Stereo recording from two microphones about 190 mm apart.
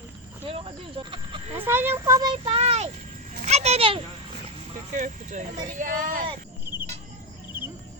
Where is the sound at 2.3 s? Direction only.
30° right (ahead or behind).